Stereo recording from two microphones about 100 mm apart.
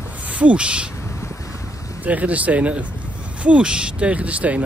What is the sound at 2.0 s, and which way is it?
Speech, 15° right (ahead or behind).